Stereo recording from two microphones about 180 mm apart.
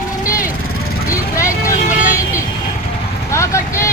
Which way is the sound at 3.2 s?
15° left (ahead or behind).